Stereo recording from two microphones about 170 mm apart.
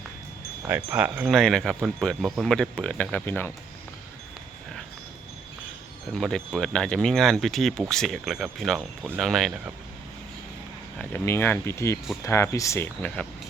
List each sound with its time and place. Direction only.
0.7 s wind chime: 10° right (ahead or behind)
1.3 s speech: centre (ahead or behind)
6.1 s speech: 5° left (ahead or behind)
10.9 s speech: 10° left (ahead or behind)